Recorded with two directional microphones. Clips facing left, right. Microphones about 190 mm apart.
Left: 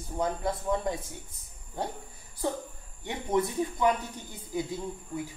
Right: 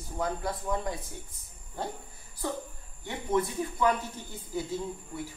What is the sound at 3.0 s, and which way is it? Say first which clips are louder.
A man's voice: left 1 dB; 20° left (ahead or behind).